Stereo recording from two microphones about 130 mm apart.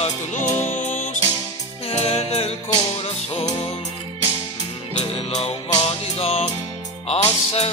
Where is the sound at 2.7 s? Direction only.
35° left (ahead or behind).